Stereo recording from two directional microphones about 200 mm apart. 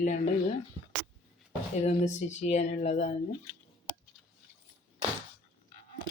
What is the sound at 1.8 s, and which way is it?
Speech, 35° left (ahead or behind).